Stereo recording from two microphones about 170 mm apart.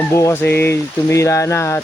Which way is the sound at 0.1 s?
15° left (ahead or behind).